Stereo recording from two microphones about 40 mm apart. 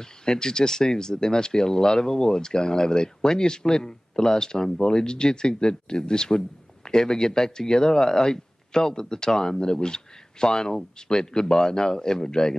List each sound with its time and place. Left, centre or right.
0.0 s speech: centre